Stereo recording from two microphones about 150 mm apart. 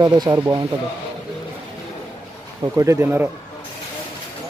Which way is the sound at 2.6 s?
20° right (ahead or behind).